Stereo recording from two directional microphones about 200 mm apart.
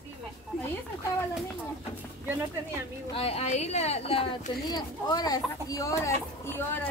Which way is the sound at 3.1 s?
30° left (ahead or behind).